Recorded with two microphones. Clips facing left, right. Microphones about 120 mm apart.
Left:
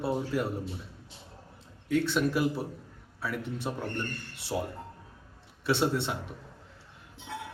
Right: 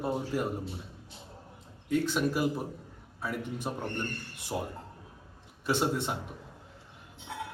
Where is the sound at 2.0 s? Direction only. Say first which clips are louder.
Left 1 dB; 45° right (ahead or behind).